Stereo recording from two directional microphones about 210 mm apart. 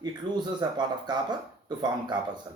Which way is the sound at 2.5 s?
15° right (ahead or behind).